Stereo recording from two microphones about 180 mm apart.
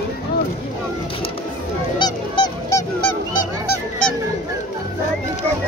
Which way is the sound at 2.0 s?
25° left (ahead or behind).